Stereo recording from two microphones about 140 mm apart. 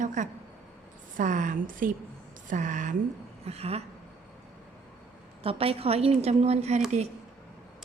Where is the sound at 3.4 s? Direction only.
45° right (ahead or behind).